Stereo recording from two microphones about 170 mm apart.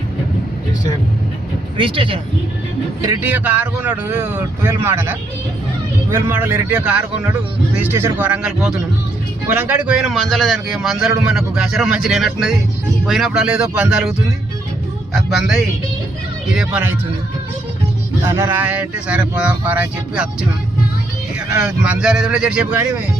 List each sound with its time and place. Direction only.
1.8 s speech: 30° right (ahead or behind)
3.0 s a man's voice: 15° right (ahead or behind)
16.6 s speech: 10° right (ahead or behind)
18.3 s speech: 15° right (ahead or behind)
21.6 s a man's voice: 5° right (ahead or behind)